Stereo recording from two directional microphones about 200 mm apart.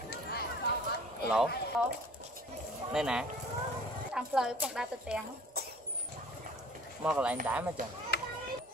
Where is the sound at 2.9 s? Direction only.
5° right (ahead or behind).